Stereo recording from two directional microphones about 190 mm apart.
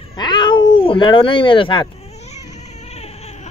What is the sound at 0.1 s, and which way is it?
Cat, 20° left (ahead or behind).